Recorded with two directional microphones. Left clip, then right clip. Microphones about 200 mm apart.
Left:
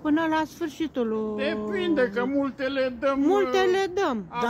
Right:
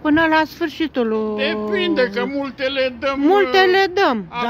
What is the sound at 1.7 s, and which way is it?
A man's voice, 45° left (ahead or behind).